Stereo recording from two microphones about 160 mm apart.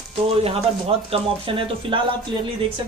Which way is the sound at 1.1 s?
35° right (ahead or behind).